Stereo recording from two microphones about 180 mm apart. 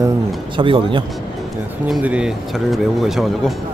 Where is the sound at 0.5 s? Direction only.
30° right (ahead or behind).